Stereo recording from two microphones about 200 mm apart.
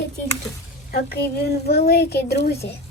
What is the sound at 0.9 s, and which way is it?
Speech, 50° left (ahead or behind).